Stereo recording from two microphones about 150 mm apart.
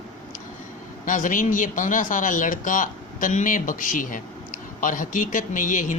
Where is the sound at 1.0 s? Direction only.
60° left (ahead or behind).